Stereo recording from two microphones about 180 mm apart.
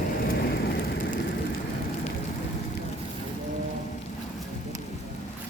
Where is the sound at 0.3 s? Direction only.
60° left (ahead or behind).